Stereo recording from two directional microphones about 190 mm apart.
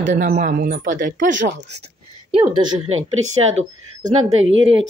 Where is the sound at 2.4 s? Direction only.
25° right (ahead or behind).